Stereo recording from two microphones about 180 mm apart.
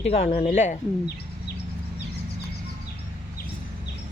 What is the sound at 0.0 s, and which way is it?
Speech, 35° left (ahead or behind).